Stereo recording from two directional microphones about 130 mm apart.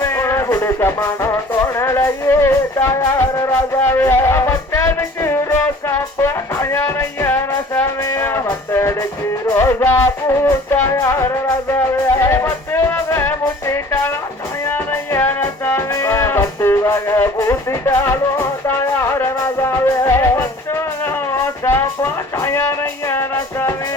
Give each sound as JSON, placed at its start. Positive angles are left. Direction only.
{"t": 0.0, "sound": "music", "side_deg": 20}